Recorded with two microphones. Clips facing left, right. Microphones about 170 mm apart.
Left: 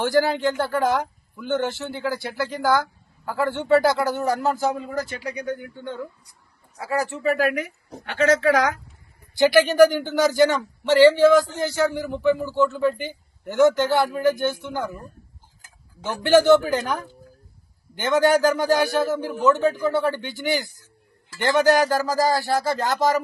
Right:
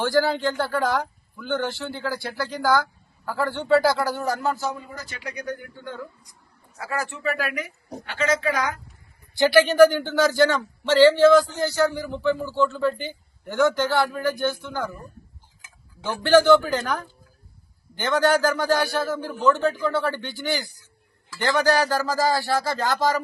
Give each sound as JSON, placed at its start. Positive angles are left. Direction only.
{"t": 0.0, "sound": "speech", "side_deg": 15}
{"t": 4.5, "sound": "speech", "side_deg": 50}
{"t": 4.9, "sound": "speech", "side_deg": 90}
{"t": 5.2, "sound": "a woman's voice", "side_deg": 30}
{"t": 9.7, "sound": "a man's voice", "side_deg": 15}
{"t": 16.0, "sound": "a man's voice", "side_deg": 20}
{"t": 19.5, "sound": "speech", "side_deg": 5}
{"t": 19.9, "sound": "a man's voice", "side_deg": 20}